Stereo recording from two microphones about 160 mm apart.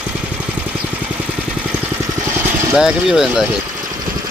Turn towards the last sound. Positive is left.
turn(degrees=-5)  # may be behind; listen again after turning